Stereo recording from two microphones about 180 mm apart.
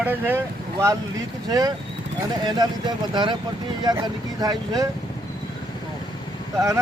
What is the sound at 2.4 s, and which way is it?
Speech, 25° right (ahead or behind).